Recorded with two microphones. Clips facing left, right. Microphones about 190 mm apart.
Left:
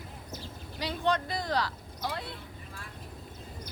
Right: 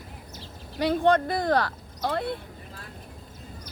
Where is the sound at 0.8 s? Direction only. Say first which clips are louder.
Right 9 dB; 55° right (ahead or behind).